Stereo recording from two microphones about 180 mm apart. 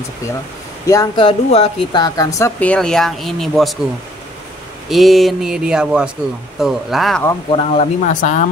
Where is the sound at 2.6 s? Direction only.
5° left (ahead or behind).